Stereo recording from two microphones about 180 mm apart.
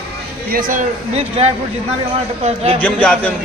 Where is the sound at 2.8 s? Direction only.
10° left (ahead or behind).